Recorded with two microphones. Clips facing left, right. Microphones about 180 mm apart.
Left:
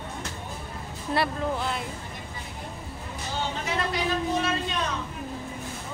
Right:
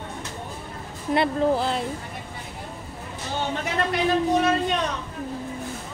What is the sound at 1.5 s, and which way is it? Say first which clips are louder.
Speech: right 6 dB; 35° right (ahead or behind).